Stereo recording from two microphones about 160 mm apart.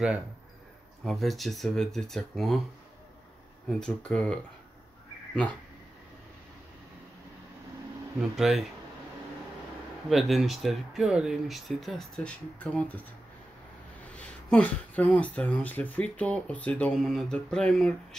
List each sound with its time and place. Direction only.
1.0 s speech: centre (ahead or behind)
3.6 s speech: 5° left (ahead or behind)
8.2 s speech: centre (ahead or behind)
10.0 s speech: centre (ahead or behind)
14.1 s speech: 10° left (ahead or behind)